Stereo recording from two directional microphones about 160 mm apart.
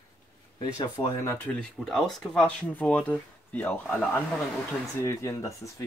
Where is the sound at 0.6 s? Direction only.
25° left (ahead or behind).